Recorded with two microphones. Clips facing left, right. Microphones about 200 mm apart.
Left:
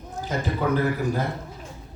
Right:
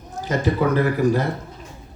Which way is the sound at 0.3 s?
90° right.